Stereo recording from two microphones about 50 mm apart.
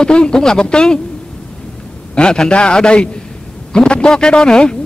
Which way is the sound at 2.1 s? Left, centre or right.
Centre.